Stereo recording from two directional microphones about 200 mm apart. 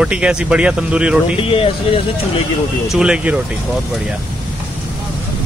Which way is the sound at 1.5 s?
30° left (ahead or behind).